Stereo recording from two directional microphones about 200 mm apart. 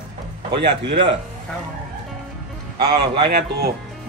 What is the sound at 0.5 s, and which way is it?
Speech, 60° right (ahead or behind).